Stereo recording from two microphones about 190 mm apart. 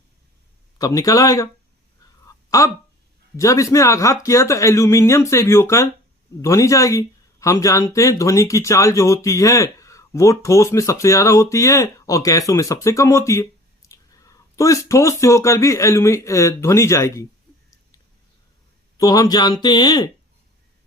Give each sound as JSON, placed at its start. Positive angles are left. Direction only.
{"t": 0.8, "sound": "speech", "side_deg": 20}
{"t": 2.2, "sound": "a sound", "side_deg": 15}
{"t": 3.3, "sound": "speech", "side_deg": 15}
{"t": 18.9, "sound": "speech", "side_deg": 20}